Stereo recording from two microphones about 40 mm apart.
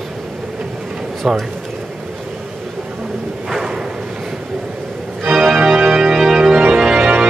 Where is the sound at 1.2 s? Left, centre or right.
Centre.